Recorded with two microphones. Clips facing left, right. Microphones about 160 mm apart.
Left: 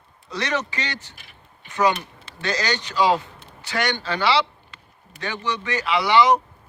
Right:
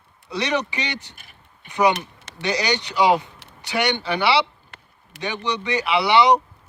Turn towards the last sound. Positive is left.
turn(degrees=-15)  # may be behind; listen again after turning